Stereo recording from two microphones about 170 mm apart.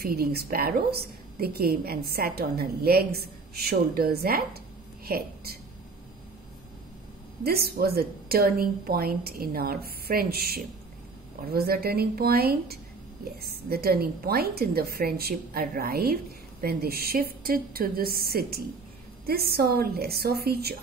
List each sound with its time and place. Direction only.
0.0 s a woman's voice: 65° right (ahead or behind)
7.4 s a woman's voice: 65° right (ahead or behind)